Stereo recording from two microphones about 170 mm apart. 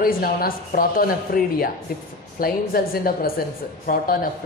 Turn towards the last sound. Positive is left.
turn(degrees=55)  # may be behind; listen again after turning